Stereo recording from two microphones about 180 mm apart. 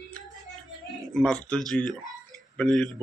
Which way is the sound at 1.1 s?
5° left (ahead or behind).